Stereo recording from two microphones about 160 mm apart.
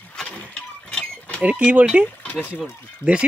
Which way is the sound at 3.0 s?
30° right (ahead or behind).